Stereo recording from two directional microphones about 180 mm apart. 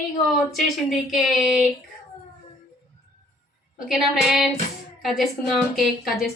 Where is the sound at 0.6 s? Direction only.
Centre (ahead or behind).